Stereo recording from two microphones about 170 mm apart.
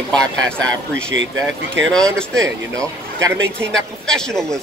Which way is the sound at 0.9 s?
90° right.